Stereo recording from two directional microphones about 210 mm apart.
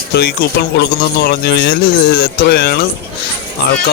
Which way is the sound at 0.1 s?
50° left (ahead or behind).